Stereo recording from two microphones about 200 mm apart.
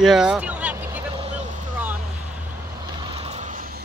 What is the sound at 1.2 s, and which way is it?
Vehicle, 35° right (ahead or behind).